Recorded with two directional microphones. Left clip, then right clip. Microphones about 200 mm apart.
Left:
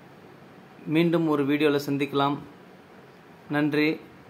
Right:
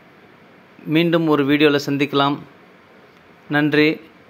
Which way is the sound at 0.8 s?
20° right (ahead or behind).